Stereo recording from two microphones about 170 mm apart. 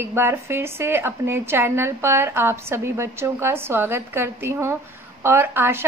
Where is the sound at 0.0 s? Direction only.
15° right (ahead or behind).